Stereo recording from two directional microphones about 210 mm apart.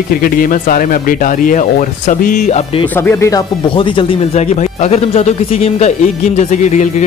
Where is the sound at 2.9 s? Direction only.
10° left (ahead or behind).